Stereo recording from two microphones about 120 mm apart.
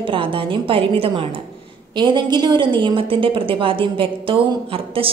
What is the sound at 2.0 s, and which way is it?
A woman's voice, 40° right (ahead or behind).